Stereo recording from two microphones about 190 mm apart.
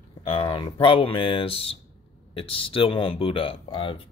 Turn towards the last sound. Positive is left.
turn(degrees=25)  # may be behind; listen again after turning